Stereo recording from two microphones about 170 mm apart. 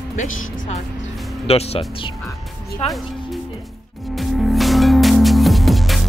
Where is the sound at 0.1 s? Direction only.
45° left (ahead or behind).